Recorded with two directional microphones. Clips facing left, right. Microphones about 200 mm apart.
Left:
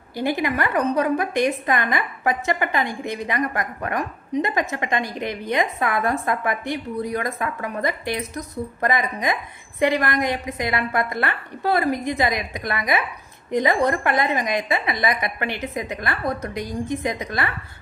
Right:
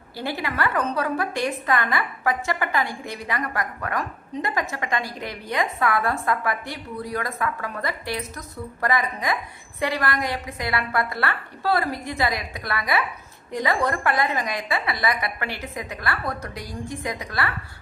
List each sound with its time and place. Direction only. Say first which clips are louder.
0.2 s a woman's voice: left 4 dB; 15° left (ahead or behind)